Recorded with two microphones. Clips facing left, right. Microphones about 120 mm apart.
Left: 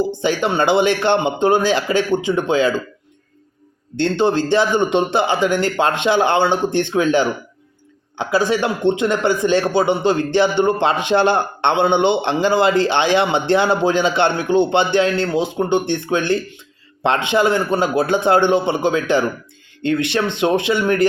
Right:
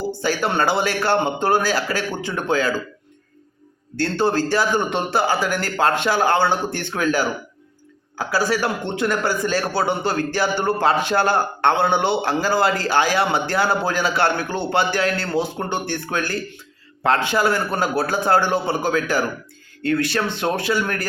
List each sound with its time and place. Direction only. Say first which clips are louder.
0.1 s a man's voice: left 3 dB; 20° left (ahead or behind)
3.9 s a man's voice: left 3 dB; 20° left (ahead or behind)